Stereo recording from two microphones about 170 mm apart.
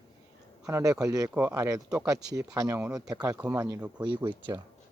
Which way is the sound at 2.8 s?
5° right (ahead or behind).